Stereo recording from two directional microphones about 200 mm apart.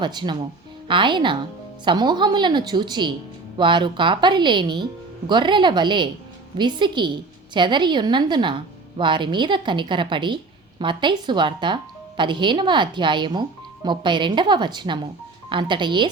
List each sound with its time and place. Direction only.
0.0 s a woman's voice: 20° right (ahead or behind)